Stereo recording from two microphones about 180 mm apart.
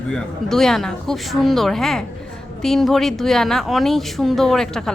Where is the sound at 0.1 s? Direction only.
Centre (ahead or behind).